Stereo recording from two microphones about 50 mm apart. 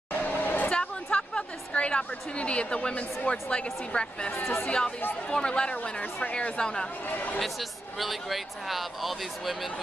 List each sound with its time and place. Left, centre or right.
0.1 s a sound: left
0.7 s a woman's voice: left
4.4 s speech: left
4.6 s speech: centre
7.1 s speech: left
8.0 s speech: centre